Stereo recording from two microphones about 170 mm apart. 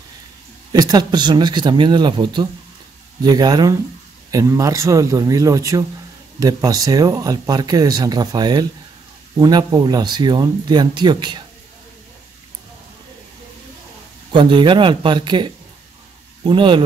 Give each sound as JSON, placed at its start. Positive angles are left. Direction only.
{"t": 0.7, "sound": "speech", "side_deg": -25}
{"t": 14.3, "sound": "speech", "side_deg": -30}